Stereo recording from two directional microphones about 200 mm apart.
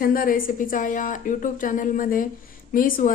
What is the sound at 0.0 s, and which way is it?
A woman's voice, 45° left (ahead or behind).